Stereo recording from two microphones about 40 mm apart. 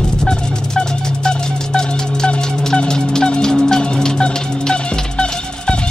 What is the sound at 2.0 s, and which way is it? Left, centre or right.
Music, left.